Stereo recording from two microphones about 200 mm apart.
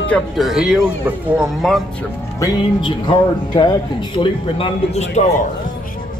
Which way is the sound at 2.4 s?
20° left (ahead or behind).